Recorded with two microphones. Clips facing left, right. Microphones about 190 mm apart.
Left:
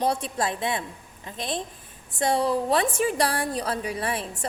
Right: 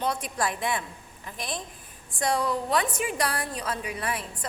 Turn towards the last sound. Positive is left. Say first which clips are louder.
# left 3 dB
turn(degrees=30)  # may be behind; listen again after turning